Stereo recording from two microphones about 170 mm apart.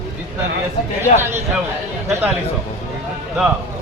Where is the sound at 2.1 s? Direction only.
10° right (ahead or behind).